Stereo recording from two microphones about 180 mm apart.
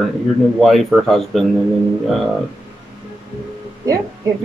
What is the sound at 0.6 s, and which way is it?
Speech, centre (ahead or behind).